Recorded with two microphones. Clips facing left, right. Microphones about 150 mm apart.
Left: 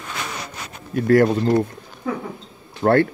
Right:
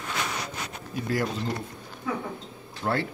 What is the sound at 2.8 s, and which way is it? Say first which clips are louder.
Speech: left 12 dB; 55° left (ahead or behind).